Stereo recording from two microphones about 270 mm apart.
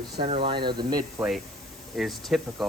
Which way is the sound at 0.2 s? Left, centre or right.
Centre.